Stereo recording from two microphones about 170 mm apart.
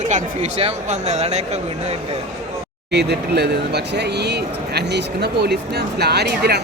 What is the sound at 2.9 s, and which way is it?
Speech, 80° right.